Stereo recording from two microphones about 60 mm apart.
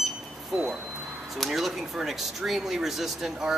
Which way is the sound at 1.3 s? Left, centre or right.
Centre.